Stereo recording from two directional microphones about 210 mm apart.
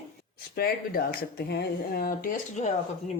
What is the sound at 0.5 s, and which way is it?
Speech, 45° left (ahead or behind).